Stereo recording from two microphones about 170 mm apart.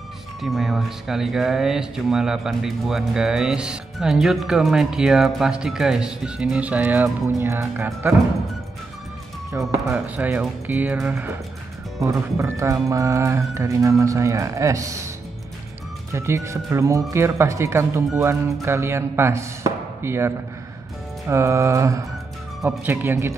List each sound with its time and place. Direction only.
0.4 s speech: centre (ahead or behind)
9.5 s speech: 15° right (ahead or behind)
16.1 s speech: 15° right (ahead or behind)